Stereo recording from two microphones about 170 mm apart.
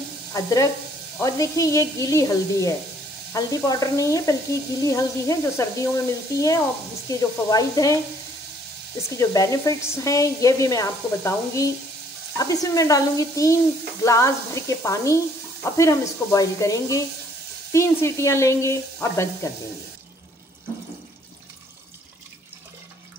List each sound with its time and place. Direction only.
0.3 s frying: 20° left (ahead or behind)
1.2 s sizzle: 20° left (ahead or behind)
9.1 s sizzle: 20° left (ahead or behind)
17.7 s speech: 15° left (ahead or behind)